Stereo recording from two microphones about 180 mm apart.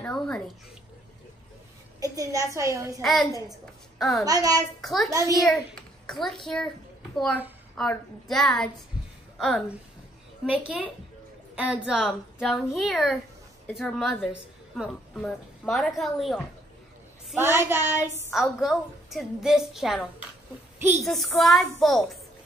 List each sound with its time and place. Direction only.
0.0 s speech: 5° left (ahead or behind)
2.0 s a woman's voice: 20° right (ahead or behind)
3.0 s a woman's voice: centre (ahead or behind)
4.3 s a child's voice: 20° right (ahead or behind)
4.8 s a woman's voice: centre (ahead or behind)
17.4 s a woman's voice: 15° right (ahead or behind)
18.3 s a woman's voice: centre (ahead or behind)